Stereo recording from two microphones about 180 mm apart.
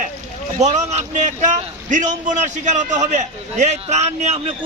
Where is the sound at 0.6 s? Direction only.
40° right (ahead or behind).